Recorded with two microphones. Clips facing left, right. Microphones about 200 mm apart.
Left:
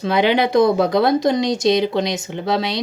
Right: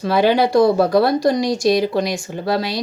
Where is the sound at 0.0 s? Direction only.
20° left (ahead or behind).